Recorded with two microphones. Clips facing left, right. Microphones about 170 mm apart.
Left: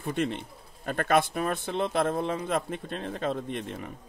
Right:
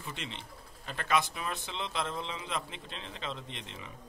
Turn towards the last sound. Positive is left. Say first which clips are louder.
# left 11 dB
turn(degrees=50)  # may be behind; listen again after turning